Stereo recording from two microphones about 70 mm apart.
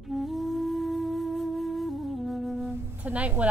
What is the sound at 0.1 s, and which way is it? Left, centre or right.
Flute, centre.